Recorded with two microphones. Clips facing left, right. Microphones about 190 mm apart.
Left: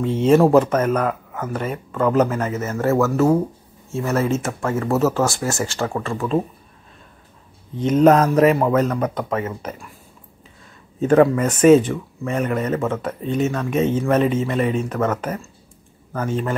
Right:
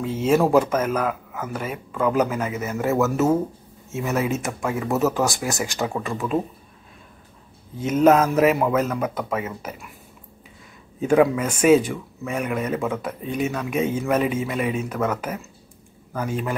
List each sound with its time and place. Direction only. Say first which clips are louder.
0.0 s speech: left 5 dB; 5° right (ahead or behind)
7.8 s speech: left 3 dB; 5° right (ahead or behind)
11.0 s speech: left 3 dB; 10° right (ahead or behind)